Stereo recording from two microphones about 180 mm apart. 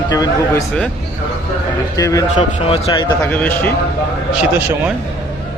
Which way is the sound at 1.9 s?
20° left (ahead or behind).